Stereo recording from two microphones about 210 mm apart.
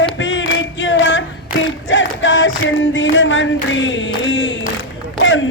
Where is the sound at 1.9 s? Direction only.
65° left (ahead or behind).